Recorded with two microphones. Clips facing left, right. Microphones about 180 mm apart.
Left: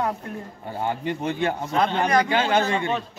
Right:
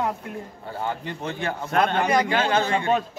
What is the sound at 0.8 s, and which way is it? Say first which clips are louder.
A man's voice: left 4 dB; 15° left (ahead or behind).